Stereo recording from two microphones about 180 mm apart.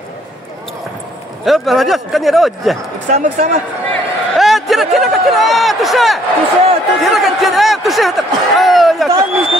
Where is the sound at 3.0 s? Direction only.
45° right (ahead or behind).